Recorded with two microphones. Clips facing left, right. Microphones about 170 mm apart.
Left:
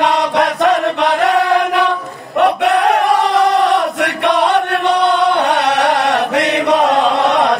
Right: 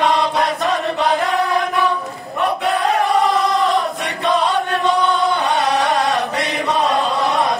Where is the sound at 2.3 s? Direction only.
80° left.